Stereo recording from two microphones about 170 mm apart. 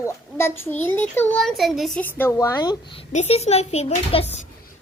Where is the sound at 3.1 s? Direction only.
40° left (ahead or behind).